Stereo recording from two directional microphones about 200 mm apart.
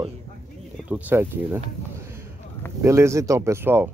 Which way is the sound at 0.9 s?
10° right (ahead or behind).